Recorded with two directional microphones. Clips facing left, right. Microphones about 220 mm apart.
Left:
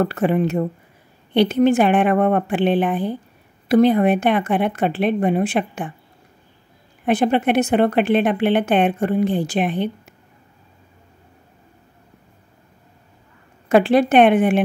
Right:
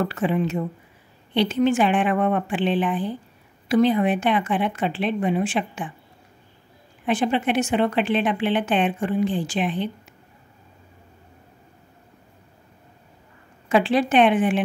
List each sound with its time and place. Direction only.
0.0 s speech: 55° left (ahead or behind)
7.1 s speech: 60° left (ahead or behind)
13.7 s speech: 55° left (ahead or behind)